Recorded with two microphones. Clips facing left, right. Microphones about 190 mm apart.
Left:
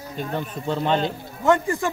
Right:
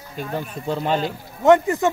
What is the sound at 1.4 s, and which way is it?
Speech, 20° right (ahead or behind).